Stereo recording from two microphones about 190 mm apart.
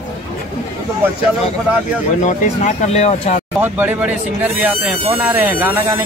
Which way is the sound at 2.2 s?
40° left (ahead or behind).